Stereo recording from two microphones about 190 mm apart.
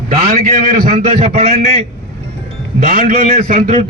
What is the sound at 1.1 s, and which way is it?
Speech, 30° right (ahead or behind).